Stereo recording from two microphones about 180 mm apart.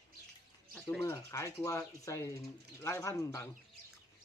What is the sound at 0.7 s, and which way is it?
Bird, 5° left (ahead or behind).